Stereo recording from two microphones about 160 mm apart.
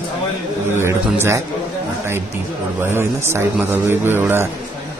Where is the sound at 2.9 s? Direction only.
15° right (ahead or behind).